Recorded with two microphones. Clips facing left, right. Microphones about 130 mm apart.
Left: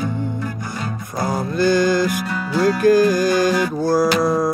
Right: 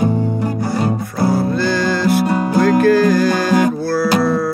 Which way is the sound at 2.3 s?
45° right (ahead or behind).